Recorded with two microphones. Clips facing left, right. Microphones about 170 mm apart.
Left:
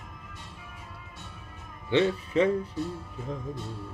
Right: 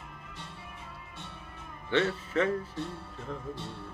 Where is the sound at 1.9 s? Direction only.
15° left (ahead or behind).